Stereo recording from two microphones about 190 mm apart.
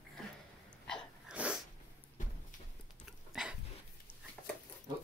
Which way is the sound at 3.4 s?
5° right (ahead or behind).